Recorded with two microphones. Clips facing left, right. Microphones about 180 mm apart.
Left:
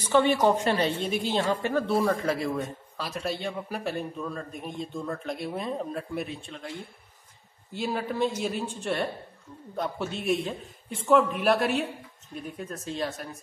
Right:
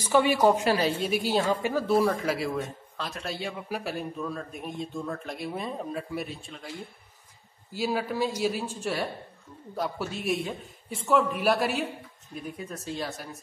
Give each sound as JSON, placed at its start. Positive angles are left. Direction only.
{"t": 0.0, "sound": "a woman's voice", "side_deg": -10}